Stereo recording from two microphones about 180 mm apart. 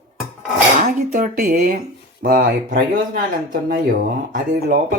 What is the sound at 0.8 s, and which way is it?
Speech, 50° right (ahead or behind).